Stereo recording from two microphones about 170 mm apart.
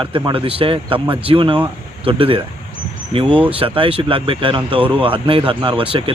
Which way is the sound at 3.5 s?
30° right (ahead or behind).